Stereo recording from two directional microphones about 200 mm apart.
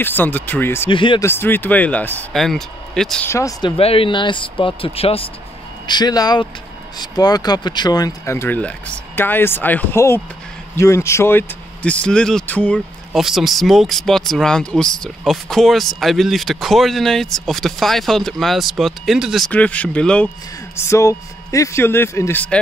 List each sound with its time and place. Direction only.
0.0 s speech: 10° left (ahead or behind)
0.8 s speech: 25° left (ahead or behind)
1.2 s speech: 10° left (ahead or behind)
3.3 s speech: 15° left (ahead or behind)
3.7 s speech: 30° left (ahead or behind); by 22.6 s 10° left (ahead or behind)